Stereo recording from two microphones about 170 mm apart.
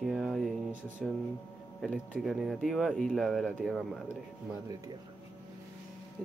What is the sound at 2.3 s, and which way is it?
Speech, centre (ahead or behind).